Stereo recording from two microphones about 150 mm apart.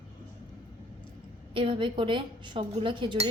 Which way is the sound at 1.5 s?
35° right (ahead or behind).